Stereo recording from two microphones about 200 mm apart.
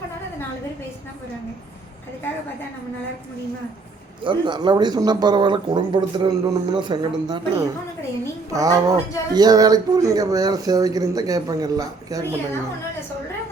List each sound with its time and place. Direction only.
4.2 s speech: 25° right (ahead or behind)